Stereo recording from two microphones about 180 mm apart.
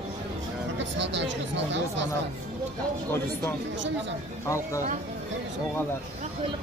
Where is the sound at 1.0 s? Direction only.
80° right.